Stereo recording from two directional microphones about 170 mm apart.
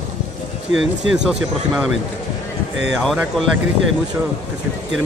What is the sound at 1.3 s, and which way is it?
Speech, centre (ahead or behind).